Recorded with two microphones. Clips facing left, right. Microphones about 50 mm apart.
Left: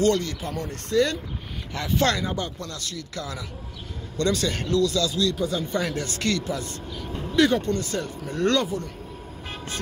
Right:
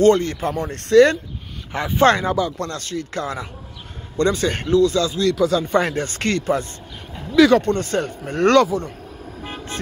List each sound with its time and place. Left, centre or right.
0.0 s speech: right
0.8 s speech: right
1.7 s speech: right
2.2 s speech: right
5.3 s speech: right
5.7 s speech: right